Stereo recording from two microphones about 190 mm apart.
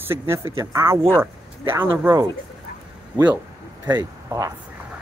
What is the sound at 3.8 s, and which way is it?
Speech, 20° right (ahead or behind).